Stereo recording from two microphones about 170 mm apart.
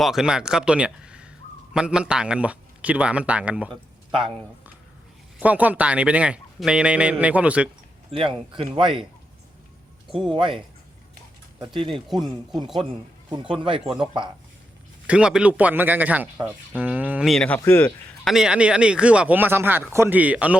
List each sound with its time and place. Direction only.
0.0 s a man's voice: 5° right (ahead or behind)
4.1 s speech: 30° right (ahead or behind)
5.4 s a man's voice: 10° right (ahead or behind)
8.1 s speech: 30° right (ahead or behind)
10.3 s speech: 30° right (ahead or behind)
11.6 s speech: 30° right (ahead or behind)
13.5 s speech: 30° right (ahead or behind)
15.0 s a man's voice: 5° right (ahead or behind); by 17.9 s 15° left (ahead or behind)
18.3 s a man's voice: 5° right (ahead or behind)